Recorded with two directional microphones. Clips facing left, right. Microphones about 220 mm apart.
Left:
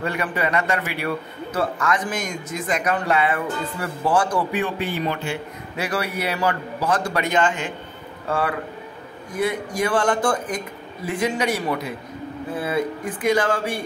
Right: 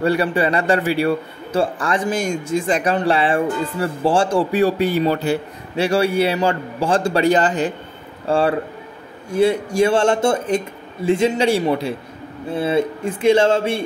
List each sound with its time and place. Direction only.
0.0 s a man's voice: 35° right (ahead or behind)